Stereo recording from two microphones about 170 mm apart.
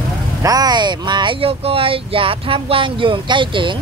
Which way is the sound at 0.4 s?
20° right (ahead or behind).